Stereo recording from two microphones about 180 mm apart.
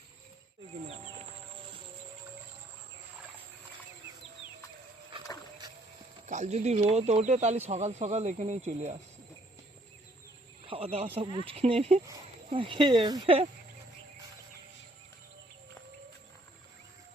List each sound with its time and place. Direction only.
6.2 s speech: 40° right (ahead or behind)
10.7 s speech: 35° right (ahead or behind)